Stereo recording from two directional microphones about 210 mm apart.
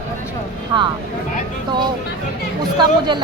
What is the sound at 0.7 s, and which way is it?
Speech, 20° right (ahead or behind).